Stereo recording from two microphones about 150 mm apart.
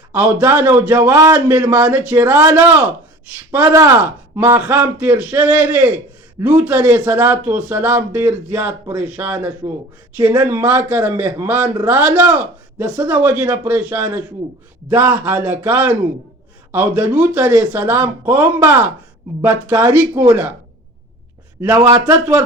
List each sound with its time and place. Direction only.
0.1 s a man's voice: 10° right (ahead or behind)
21.6 s a man's voice: 15° right (ahead or behind)